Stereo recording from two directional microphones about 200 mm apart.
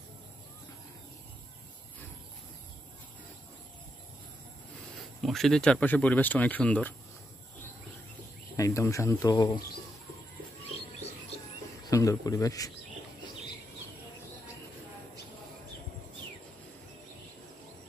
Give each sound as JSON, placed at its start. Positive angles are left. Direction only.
{"t": 5.2, "sound": "speech", "side_deg": 0}
{"t": 8.5, "sound": "speech", "side_deg": 15}
{"t": 11.9, "sound": "speech", "side_deg": 15}